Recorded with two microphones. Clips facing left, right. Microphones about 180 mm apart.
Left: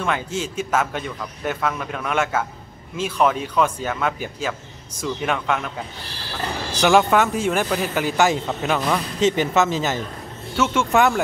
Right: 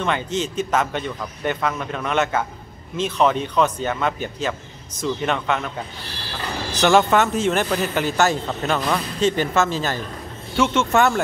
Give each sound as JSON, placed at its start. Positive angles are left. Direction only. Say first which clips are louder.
{"t": 0.0, "sound": "a man's voice", "louder": "right 1 dB", "side_deg": 5}
{"t": 9.2, "sound": "speech", "louder": "left 1 dB", "side_deg": 15}
{"t": 10.5, "sound": "speech", "louder": "right 1 dB", "side_deg": 5}